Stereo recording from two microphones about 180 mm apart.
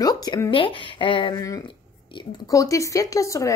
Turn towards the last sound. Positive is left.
turn(degrees=15)  # may be behind; listen again after turning